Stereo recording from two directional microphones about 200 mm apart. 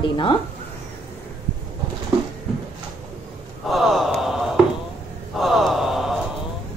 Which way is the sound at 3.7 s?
Centre (ahead or behind).